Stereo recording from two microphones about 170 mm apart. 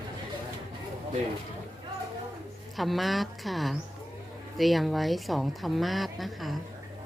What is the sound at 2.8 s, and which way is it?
A woman's voice, centre (ahead or behind).